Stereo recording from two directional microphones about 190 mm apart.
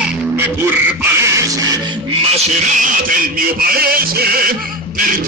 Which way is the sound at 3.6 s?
50° right (ahead or behind).